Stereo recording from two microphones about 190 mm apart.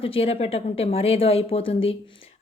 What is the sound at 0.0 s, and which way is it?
Speech, 30° left (ahead or behind).